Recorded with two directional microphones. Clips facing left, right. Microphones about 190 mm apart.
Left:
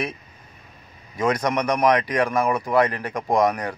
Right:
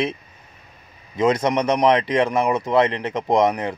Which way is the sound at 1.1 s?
25° right (ahead or behind).